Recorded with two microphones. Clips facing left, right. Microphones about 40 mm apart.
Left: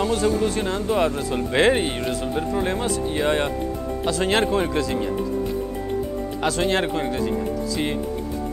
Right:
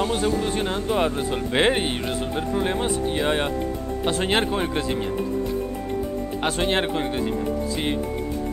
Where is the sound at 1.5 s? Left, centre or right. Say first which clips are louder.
Left 2 dB; right.